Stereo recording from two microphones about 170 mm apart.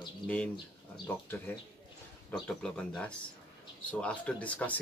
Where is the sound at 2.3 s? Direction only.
5° left (ahead or behind).